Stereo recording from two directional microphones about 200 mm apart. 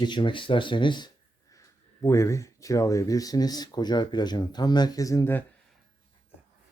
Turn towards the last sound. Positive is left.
turn(degrees=10)  # may be behind; listen again after turning